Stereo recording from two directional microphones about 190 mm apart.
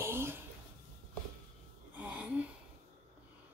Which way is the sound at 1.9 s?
10° right (ahead or behind).